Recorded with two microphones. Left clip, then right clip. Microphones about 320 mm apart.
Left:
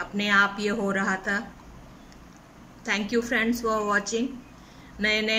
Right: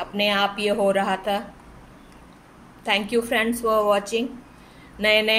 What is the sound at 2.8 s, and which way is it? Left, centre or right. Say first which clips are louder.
Speech: right 4 dB; centre.